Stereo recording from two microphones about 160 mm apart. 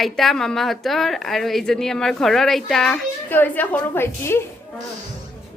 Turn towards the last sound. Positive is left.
turn(degrees=15)  # may be behind; listen again after turning